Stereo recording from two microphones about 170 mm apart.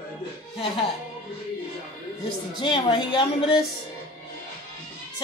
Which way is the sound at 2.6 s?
30° left (ahead or behind).